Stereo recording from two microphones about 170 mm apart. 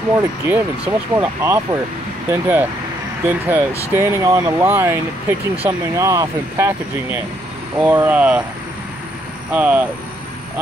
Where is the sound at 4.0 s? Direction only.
15° right (ahead or behind).